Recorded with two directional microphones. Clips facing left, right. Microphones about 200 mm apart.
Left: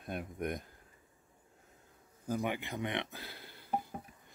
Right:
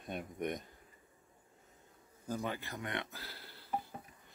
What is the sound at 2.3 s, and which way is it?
Speech, 15° left (ahead or behind).